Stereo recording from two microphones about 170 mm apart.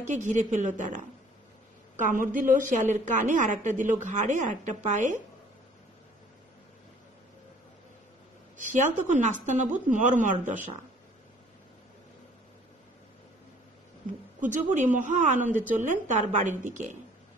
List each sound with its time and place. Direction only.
0.2 s a woman's voice: 45° right (ahead or behind)
8.5 s a woman's voice: 50° right (ahead or behind)
14.4 s a woman's voice: 50° right (ahead or behind)